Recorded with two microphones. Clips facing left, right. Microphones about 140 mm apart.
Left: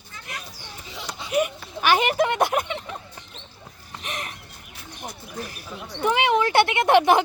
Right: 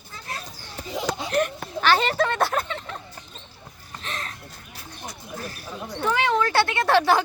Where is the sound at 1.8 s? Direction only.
15° left (ahead or behind).